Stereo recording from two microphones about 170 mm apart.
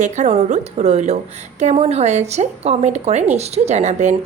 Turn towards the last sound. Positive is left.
turn(degrees=-40)  # may be behind; listen again after turning